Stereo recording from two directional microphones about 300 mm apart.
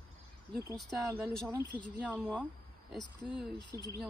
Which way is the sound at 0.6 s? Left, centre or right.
Centre.